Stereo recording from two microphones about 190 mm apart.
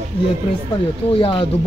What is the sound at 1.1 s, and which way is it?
Speech, 30° left (ahead or behind).